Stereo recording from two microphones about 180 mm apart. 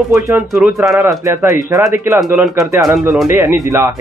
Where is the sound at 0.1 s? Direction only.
10° right (ahead or behind).